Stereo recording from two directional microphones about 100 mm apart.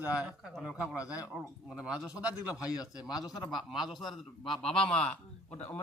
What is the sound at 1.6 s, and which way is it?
A man's voice, 10° right (ahead or behind).